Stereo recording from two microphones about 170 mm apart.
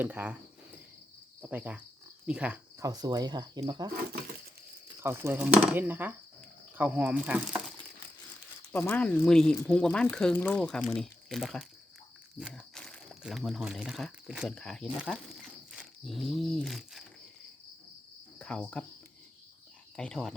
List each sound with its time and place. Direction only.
0.0 s cricket: 10° right (ahead or behind)
2.2 s speech: 5° right (ahead or behind)
2.7 s speech: 20° right (ahead or behind)
4.9 s speech: 15° right (ahead or behind)
8.7 s speech: 10° left (ahead or behind)
18.3 s cricket: 5° left (ahead or behind)
20.0 s speech: 5° left (ahead or behind)